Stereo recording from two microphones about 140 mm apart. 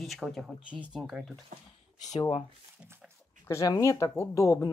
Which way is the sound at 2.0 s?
25° left (ahead or behind).